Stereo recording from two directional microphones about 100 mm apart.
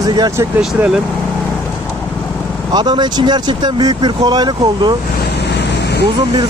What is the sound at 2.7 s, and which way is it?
Speech, 45° right (ahead or behind).